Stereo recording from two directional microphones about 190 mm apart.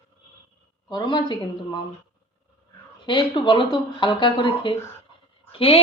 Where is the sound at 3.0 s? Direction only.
25° left (ahead or behind).